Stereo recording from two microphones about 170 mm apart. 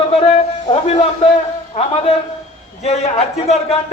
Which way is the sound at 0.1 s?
40° left (ahead or behind).